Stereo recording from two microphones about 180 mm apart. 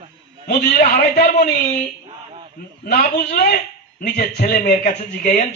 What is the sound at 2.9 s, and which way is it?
A man's voice, 60° left (ahead or behind).